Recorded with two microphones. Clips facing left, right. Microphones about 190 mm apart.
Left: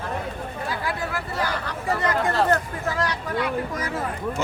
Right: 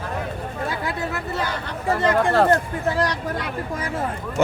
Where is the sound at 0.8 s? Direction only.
25° right (ahead or behind).